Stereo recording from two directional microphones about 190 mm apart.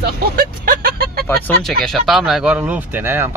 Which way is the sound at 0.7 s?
50° right (ahead or behind).